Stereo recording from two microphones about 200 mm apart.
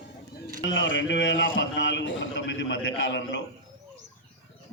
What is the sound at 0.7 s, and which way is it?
A man's voice, 70° left (ahead or behind).